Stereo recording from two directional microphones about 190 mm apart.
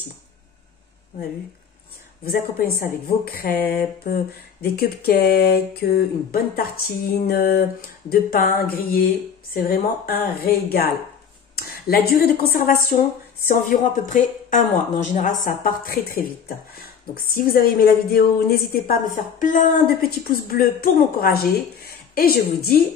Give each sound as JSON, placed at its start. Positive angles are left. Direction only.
{"t": 2.2, "sound": "a woman's voice", "side_deg": 50}
{"t": 4.6, "sound": "a sound", "side_deg": 55}
{"t": 8.1, "sound": "a woman's voice", "side_deg": 50}